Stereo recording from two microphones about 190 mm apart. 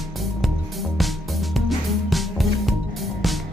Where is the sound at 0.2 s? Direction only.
Centre (ahead or behind).